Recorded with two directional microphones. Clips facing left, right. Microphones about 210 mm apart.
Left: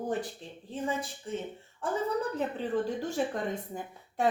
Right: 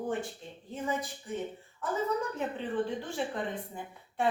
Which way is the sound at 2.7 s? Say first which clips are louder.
Left 3 dB; 40° left (ahead or behind).